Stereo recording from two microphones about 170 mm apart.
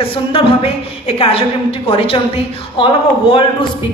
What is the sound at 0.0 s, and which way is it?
A woman's voice, 30° left (ahead or behind).